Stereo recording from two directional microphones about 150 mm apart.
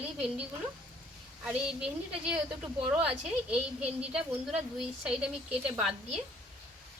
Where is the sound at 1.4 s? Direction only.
5° right (ahead or behind).